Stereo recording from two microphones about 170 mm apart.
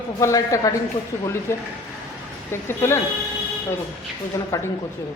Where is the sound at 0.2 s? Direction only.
20° left (ahead or behind).